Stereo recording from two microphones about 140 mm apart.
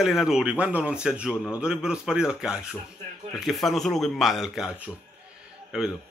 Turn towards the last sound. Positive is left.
turn(degrees=-5)  # may be behind; listen again after turning